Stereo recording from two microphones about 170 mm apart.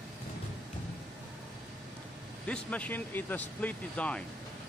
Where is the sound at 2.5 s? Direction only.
5° left (ahead or behind).